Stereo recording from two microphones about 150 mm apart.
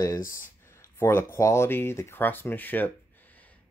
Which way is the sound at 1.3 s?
20° left (ahead or behind).